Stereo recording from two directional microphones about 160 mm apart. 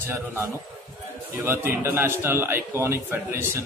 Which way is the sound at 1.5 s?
15° right (ahead or behind).